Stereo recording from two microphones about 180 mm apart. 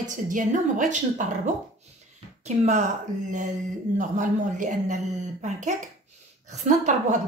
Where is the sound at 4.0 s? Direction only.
45° right (ahead or behind).